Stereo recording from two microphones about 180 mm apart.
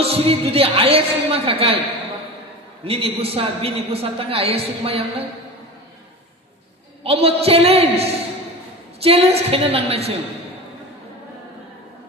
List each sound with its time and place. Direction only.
0.0 s speech: 35° right (ahead or behind)
2.8 s speech: 30° right (ahead or behind)
7.0 s speech: 35° right (ahead or behind)